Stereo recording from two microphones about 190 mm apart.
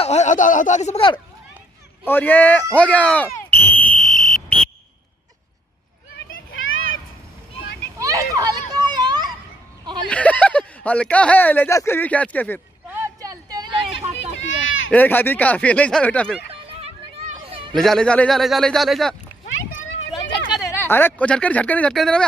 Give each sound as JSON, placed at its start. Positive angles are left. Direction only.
{"t": 0.0, "sound": "speech", "side_deg": 35}
{"t": 2.0, "sound": "speech", "side_deg": 10}
{"t": 4.0, "sound": "fire alarm", "side_deg": 5}
{"t": 6.5, "sound": "children playing", "side_deg": 90}
{"t": 8.0, "sound": "children playing", "side_deg": -15}
{"t": 10.0, "sound": "speech", "side_deg": 5}
{"t": 12.9, "sound": "a sound", "side_deg": -15}
{"t": 14.9, "sound": "speech", "side_deg": 10}
{"t": 17.5, "sound": "chatter", "side_deg": -30}
{"t": 17.7, "sound": "speech", "side_deg": 5}
{"t": 20.6, "sound": "speech", "side_deg": 15}